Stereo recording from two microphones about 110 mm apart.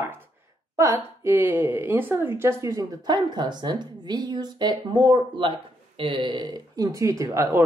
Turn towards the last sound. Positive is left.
turn(degrees=-25)  # may be behind; listen again after turning